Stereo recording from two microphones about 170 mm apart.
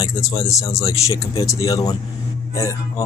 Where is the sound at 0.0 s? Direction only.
20° left (ahead or behind).